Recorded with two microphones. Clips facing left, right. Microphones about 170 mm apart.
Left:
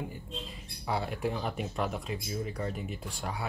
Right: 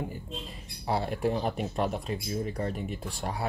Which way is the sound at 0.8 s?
35° right (ahead or behind).